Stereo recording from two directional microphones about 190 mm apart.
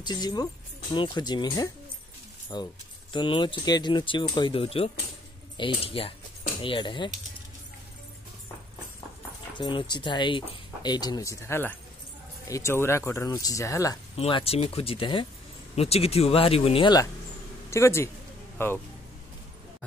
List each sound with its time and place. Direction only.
0.0 s speech: 20° left (ahead or behind)
9.5 s speech: 25° left (ahead or behind)
14.1 s speech: 30° left (ahead or behind); by 18.7 s 10° left (ahead or behind)